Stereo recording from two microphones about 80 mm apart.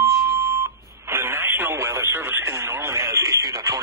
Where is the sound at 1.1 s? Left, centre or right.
Right.